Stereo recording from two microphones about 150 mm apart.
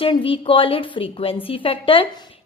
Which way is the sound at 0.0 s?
35° left (ahead or behind).